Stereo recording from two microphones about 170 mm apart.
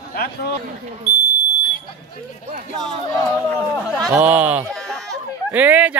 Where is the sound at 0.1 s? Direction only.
65° left (ahead or behind).